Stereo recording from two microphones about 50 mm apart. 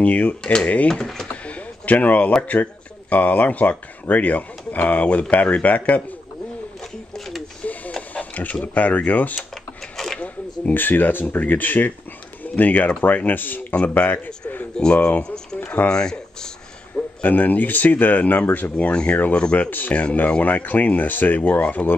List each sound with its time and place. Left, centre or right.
0.0 s speech: left
0.4 s speech: centre
1.3 s a sound: left
2.4 s speech: left
7.6 s radio: left
8.1 s printer: left
8.7 s speech: left
9.9 s a sound: centre
10.2 s a man's voice: left
14.8 s speech: centre
15.6 s a sound: left
15.9 s speech: centre
17.2 s speech: left
18.9 s speech: centre